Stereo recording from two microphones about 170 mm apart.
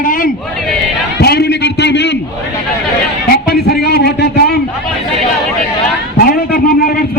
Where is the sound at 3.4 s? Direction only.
70° left (ahead or behind).